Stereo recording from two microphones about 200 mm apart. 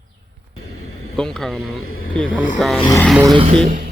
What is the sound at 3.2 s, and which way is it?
Speech, 25° right (ahead or behind).